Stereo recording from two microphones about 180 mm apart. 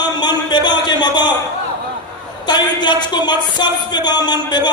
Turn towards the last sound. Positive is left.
turn(degrees=25)  # may be behind; listen again after turning